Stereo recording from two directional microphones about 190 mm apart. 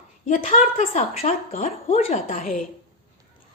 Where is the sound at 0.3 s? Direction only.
40° left (ahead or behind).